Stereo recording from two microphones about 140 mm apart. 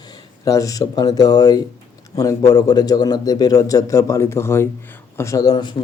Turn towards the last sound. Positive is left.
turn(degrees=30)  # may be behind; listen again after turning